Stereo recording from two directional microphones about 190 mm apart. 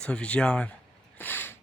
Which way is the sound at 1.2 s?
10° left (ahead or behind).